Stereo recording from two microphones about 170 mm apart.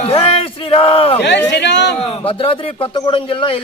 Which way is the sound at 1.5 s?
90° left.